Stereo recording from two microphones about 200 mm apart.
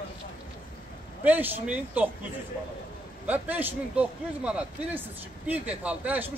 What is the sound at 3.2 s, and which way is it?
A man's voice, 10° right (ahead or behind).